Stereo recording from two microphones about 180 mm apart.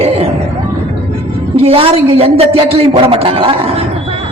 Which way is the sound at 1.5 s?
30° right (ahead or behind).